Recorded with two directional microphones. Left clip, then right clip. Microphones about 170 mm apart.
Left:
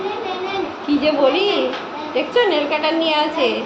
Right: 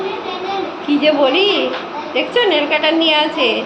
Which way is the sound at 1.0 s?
5° right (ahead or behind).